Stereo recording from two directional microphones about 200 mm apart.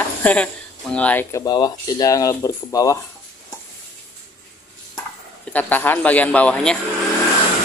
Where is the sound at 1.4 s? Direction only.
20° left (ahead or behind).